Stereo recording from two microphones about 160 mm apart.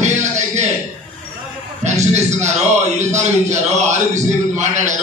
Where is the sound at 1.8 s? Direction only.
45° right (ahead or behind).